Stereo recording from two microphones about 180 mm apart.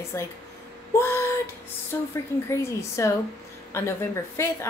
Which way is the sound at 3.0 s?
15° left (ahead or behind).